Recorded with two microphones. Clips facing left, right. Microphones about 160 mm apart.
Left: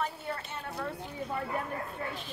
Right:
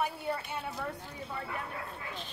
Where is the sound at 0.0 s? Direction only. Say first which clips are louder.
Right 2 dB; 10° right (ahead or behind).